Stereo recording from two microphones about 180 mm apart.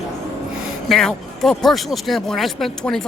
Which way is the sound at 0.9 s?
Centre (ahead or behind).